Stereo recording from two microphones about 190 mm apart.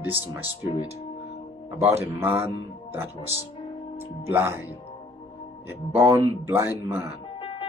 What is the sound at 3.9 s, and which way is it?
Speech, 15° right (ahead or behind).